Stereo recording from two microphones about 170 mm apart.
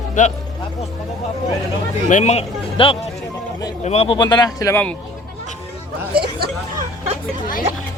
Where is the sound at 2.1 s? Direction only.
45° left (ahead or behind); by 4.8 s 20° left (ahead or behind).